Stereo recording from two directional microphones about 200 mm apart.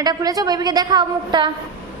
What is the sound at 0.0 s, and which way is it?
A woman's voice, 20° right (ahead or behind).